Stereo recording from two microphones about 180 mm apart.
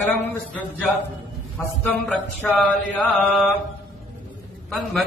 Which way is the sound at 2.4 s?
5° left (ahead or behind).